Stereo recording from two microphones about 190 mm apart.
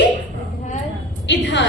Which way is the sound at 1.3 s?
70° left (ahead or behind).